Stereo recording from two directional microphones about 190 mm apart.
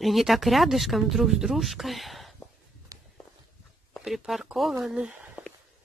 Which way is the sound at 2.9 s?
20° right (ahead or behind).